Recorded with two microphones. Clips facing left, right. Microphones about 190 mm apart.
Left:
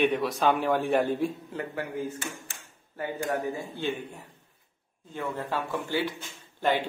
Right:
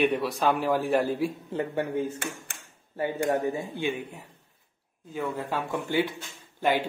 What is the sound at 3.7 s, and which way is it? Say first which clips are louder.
Speech: right 2 dB; 15° right (ahead or behind).